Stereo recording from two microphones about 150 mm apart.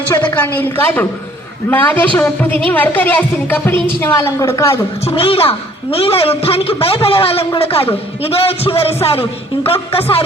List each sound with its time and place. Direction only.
0.3 s a woman's voice: 15° left (ahead or behind)
5.0 s a man's voice: 40° left (ahead or behind)